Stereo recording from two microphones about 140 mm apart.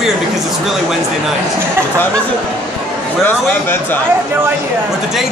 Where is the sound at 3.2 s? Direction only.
15° left (ahead or behind).